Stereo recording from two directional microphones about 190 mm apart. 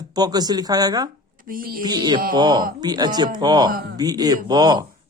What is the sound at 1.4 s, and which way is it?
Speech, 50° right (ahead or behind).